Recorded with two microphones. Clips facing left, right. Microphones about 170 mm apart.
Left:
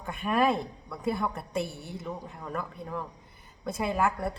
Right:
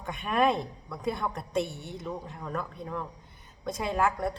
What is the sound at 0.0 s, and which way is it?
A woman's voice, centre (ahead or behind).